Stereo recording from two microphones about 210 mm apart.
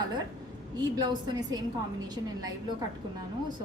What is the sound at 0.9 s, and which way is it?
Speech, 20° right (ahead or behind).